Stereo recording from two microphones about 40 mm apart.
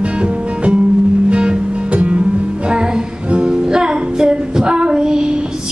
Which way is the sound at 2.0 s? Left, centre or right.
Right.